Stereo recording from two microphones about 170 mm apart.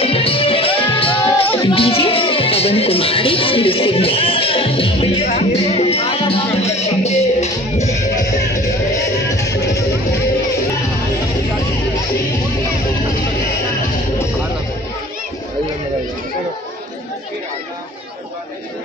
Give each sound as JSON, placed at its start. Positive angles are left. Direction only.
{"t": 0.0, "sound": "music", "side_deg": 35}
{"t": 8.9, "sound": "music", "side_deg": 20}